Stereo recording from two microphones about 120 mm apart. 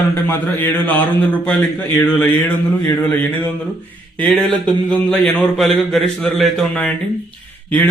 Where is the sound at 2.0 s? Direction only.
15° left (ahead or behind).